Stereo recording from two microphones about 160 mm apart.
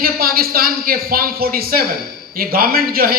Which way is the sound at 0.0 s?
70° right (ahead or behind).